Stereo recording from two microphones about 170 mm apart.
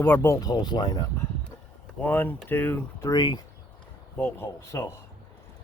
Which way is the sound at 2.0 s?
10° left (ahead or behind).